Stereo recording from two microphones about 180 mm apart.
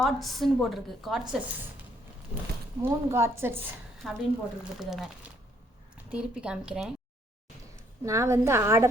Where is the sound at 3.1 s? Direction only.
15° right (ahead or behind).